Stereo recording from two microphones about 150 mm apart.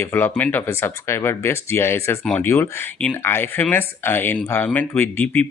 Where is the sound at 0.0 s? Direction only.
15° left (ahead or behind).